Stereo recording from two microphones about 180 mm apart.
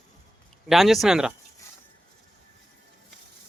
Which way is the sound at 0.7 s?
Centre (ahead or behind).